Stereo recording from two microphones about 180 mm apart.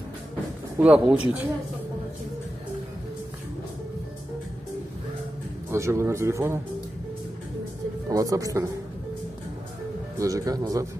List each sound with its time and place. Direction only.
0.7 s speech: 5° right (ahead or behind)
5.7 s speech: 15° right (ahead or behind)
8.1 s speech: 20° right (ahead or behind)
10.1 s speech: 20° right (ahead or behind)